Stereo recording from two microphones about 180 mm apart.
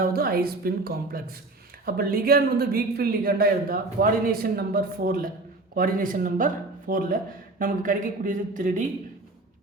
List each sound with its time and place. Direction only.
0.0 s speech: 55° right (ahead or behind)